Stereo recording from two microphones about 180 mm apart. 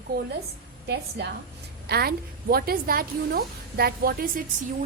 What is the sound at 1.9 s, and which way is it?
A woman's voice, 60° right (ahead or behind).